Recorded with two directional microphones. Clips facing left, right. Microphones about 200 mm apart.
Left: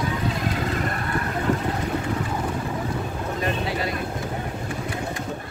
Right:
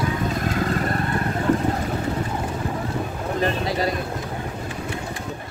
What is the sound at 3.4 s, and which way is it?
Boat, 40° right (ahead or behind).